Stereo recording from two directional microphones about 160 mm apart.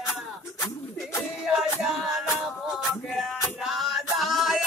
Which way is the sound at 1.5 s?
5° right (ahead or behind).